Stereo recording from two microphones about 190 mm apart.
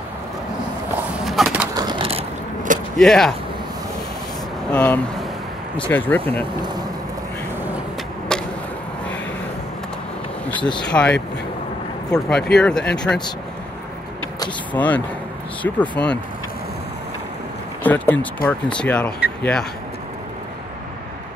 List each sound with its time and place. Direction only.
1.2 s bird: centre (ahead or behind)
1.8 s vehicle: 25° right (ahead or behind)
3.0 s speech: centre (ahead or behind)
4.7 s speech: 10° left (ahead or behind)
6.6 s speech: 20° right (ahead or behind)
8.3 s arrow: 5° left (ahead or behind)
10.5 s speech: 25° left (ahead or behind)
10.8 s speech: 5° left (ahead or behind)
14.7 s speech: 10° left (ahead or behind)
17.8 s speech: 10° left (ahead or behind)